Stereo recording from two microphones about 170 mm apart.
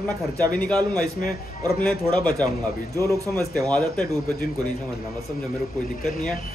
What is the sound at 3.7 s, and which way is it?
Speech, 5° left (ahead or behind).